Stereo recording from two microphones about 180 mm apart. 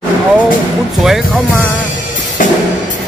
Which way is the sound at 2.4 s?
45° left (ahead or behind).